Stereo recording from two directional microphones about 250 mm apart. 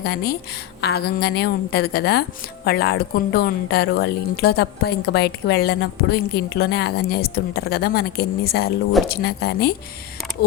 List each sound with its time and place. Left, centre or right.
0.0 s a woman's voice: left